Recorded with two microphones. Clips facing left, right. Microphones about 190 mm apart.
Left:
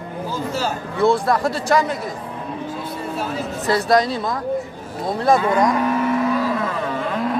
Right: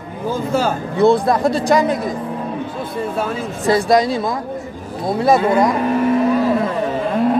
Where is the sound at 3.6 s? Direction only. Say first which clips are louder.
Right 3 dB; 15° right (ahead or behind).